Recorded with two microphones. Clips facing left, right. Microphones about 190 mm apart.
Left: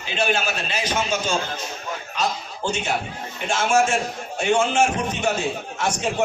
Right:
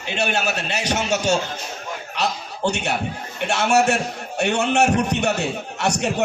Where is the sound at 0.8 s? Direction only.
70° right (ahead or behind).